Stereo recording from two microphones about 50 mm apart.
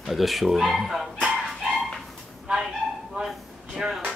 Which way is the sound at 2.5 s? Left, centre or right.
Centre.